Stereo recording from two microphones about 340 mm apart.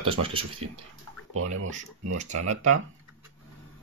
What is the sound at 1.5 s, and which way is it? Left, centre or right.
Speech, right.